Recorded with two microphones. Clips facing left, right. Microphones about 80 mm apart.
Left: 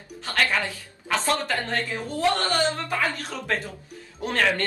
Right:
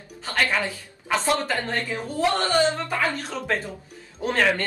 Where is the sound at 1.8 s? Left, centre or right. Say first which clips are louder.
Right 1 dB; right.